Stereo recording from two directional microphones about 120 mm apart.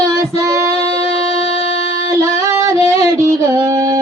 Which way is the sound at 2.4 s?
25° right (ahead or behind).